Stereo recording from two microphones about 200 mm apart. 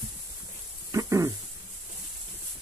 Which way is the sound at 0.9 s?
15° right (ahead or behind).